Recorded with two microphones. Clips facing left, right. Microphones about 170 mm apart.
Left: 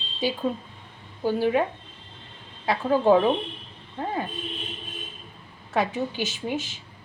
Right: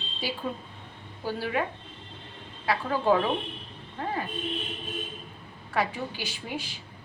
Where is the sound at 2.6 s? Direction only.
20° left (ahead or behind).